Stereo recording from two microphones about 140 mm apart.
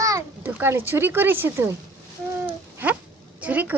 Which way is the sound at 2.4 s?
10° right (ahead or behind).